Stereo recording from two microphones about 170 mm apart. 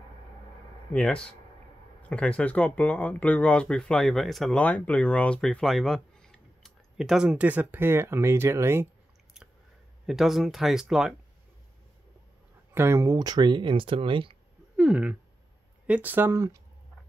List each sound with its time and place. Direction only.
0.9 s speech: 5° left (ahead or behind); by 8.8 s 15° right (ahead or behind)
10.0 s speech: centre (ahead or behind)
12.7 s speech: 15° right (ahead or behind); by 14.3 s 30° right (ahead or behind)
14.8 s a sound: 5° right (ahead or behind)
15.9 s speech: 10° right (ahead or behind)